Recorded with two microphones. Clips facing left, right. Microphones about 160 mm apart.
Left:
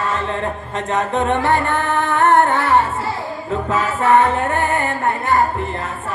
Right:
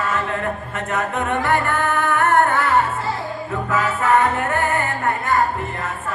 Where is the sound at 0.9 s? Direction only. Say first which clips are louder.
Left 4 dB; 25° left (ahead or behind).